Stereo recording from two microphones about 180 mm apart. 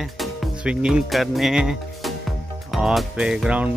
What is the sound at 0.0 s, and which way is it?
Speech, centre (ahead or behind).